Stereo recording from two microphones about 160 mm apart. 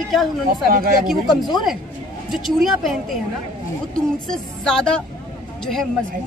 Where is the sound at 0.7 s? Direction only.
65° right (ahead or behind).